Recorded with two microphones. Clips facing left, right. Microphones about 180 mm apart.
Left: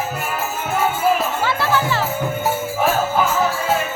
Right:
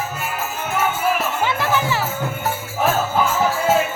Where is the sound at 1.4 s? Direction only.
15° right (ahead or behind).